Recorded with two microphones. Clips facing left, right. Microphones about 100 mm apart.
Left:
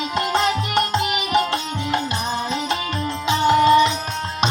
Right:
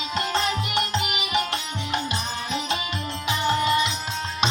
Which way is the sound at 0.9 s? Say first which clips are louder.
Left 6 dB; 25° left (ahead or behind).